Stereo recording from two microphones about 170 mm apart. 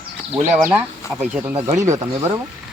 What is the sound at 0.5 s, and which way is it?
Speech, 5° right (ahead or behind).